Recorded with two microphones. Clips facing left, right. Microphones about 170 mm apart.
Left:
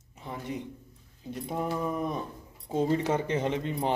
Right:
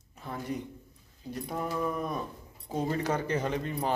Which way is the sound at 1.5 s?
20° left (ahead or behind).